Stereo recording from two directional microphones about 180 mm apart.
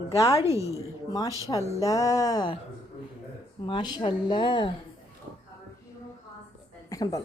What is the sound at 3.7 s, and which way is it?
Speech, 25° left (ahead or behind).